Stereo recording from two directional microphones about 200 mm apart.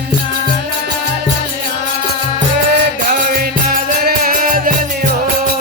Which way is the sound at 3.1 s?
45° right (ahead or behind).